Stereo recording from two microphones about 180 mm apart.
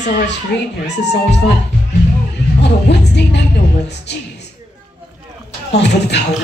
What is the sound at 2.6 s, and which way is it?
Music, 75° left (ahead or behind).